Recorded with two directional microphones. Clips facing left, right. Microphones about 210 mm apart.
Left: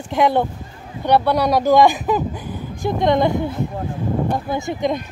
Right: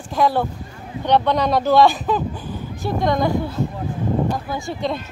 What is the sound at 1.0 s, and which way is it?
Speech, 10° left (ahead or behind).